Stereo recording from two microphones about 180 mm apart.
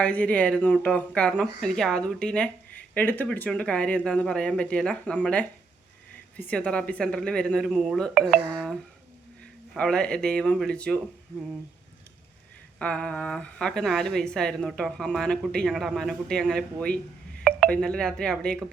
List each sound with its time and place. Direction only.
0.0 s speech: 5° left (ahead or behind)
12.8 s speech: 5° left (ahead or behind)